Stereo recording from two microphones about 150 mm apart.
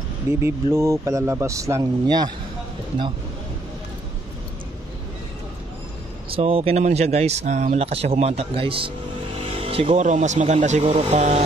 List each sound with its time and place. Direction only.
0.4 s speech: 20° right (ahead or behind)
6.3 s speech: 40° right (ahead or behind)
9.4 s vehicle: 40° right (ahead or behind)
10.0 s speech: 50° right (ahead or behind)